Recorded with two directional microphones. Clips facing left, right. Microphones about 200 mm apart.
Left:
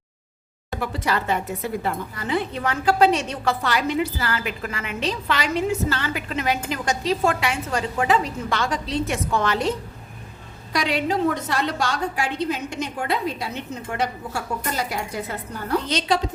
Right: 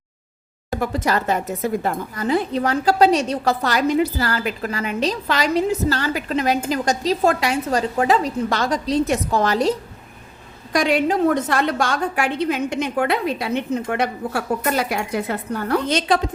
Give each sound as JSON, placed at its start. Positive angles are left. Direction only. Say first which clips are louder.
{"t": 0.8, "sound": "a woman's voice", "louder": "right 4 dB", "side_deg": -45}
{"t": 10.7, "sound": "a woman's voice", "louder": "right 5 dB", "side_deg": -50}